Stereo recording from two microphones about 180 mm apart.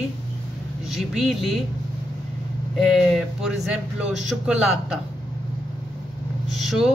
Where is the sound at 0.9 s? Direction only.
Centre (ahead or behind).